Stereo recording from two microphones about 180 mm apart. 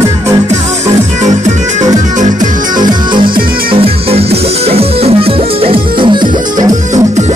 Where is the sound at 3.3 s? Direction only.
55° right (ahead or behind).